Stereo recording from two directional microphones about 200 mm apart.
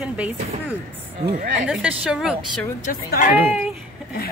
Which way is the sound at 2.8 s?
45° left (ahead or behind).